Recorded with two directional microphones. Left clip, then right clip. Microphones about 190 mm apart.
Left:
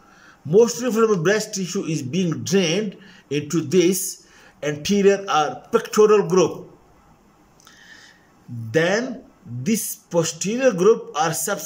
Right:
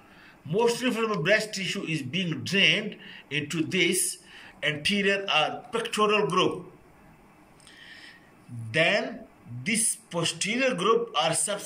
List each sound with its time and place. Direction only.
0.5 s speech: 85° left
8.7 s speech: 80° left